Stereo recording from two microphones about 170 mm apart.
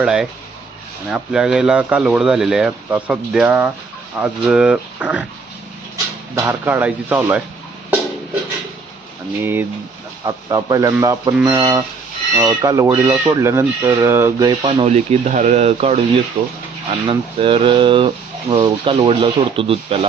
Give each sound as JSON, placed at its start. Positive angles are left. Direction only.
{"t": 0.0, "sound": "speech", "side_deg": -5}
{"t": 6.3, "sound": "speech", "side_deg": -15}
{"t": 9.4, "sound": "speech", "side_deg": -10}
{"t": 14.6, "sound": "speech", "side_deg": -35}